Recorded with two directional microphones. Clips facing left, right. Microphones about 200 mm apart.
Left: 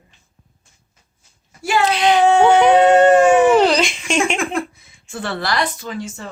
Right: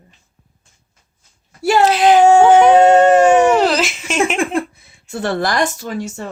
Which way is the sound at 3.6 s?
5° right (ahead or behind).